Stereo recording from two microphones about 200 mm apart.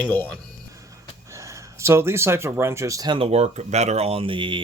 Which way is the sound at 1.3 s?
15° right (ahead or behind).